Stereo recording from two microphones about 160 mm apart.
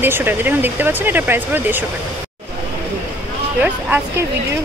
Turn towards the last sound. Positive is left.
turn(degrees=-10)  # may be behind; listen again after turning